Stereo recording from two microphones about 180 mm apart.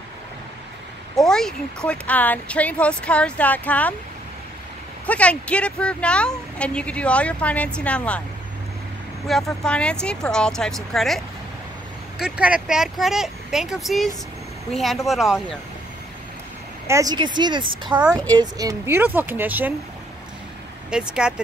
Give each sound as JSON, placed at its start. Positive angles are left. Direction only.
{"t": 1.1, "sound": "speech", "side_deg": 0}
{"t": 5.0, "sound": "speech", "side_deg": 5}
{"t": 9.6, "sound": "speech", "side_deg": 5}
{"t": 16.8, "sound": "speech", "side_deg": -20}
{"t": 18.1, "sound": "speech", "side_deg": 10}
{"t": 18.4, "sound": "speech", "side_deg": -20}
{"t": 20.9, "sound": "speech", "side_deg": -5}